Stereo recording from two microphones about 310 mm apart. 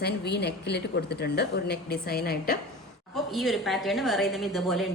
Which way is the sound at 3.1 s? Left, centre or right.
Centre.